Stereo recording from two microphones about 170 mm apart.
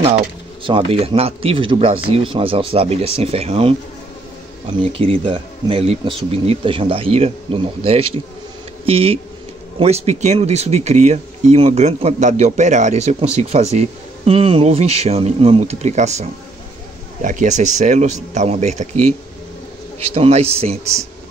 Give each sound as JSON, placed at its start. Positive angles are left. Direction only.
{"t": 0.7, "sound": "speech", "side_deg": -30}
{"t": 20.2, "sound": "speech", "side_deg": -40}